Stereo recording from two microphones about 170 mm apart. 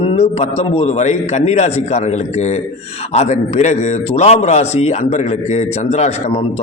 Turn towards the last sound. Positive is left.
turn(degrees=40)  # may be behind; listen again after turning